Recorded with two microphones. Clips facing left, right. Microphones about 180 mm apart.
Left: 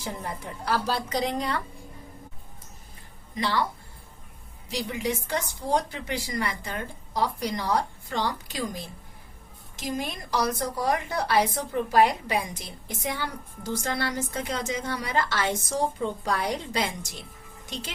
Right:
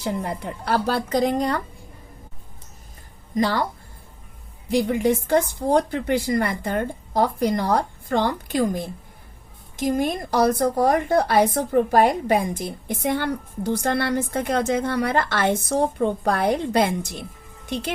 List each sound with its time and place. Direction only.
0.0 s a woman's voice: 65° right (ahead or behind); by 1.6 s 45° right (ahead or behind)
3.3 s speech: 45° right (ahead or behind)
4.7 s a woman's voice: 55° right (ahead or behind)